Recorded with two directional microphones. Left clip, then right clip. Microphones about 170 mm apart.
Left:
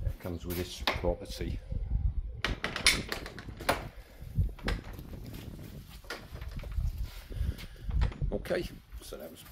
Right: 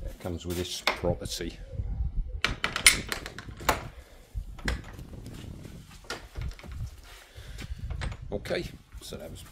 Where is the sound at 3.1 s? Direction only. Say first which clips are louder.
Right 3 dB; 35° right (ahead or behind).